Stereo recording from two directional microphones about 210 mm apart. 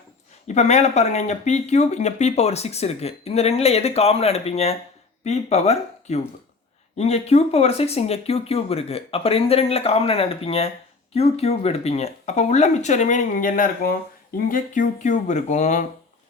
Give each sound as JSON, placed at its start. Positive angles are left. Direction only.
{"t": 0.4, "sound": "speech", "side_deg": 35}